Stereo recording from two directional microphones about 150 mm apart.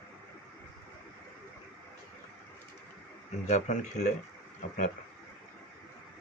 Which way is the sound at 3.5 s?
50° left (ahead or behind).